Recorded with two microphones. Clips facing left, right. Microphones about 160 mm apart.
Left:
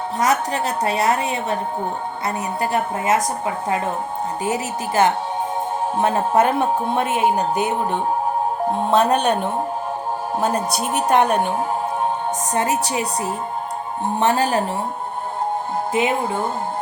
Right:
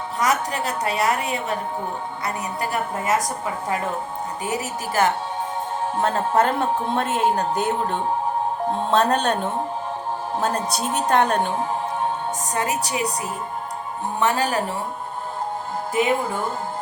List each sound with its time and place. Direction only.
0.2 s a woman's voice: 25° left (ahead or behind)
12.5 s a woman's voice: 25° left (ahead or behind)
14.2 s a woman's voice: 25° left (ahead or behind)
16.0 s a woman's voice: 25° left (ahead or behind)